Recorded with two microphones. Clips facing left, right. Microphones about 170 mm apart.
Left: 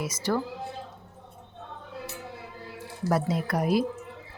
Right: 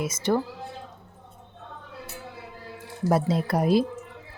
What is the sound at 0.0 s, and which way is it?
Speech, 20° right (ahead or behind).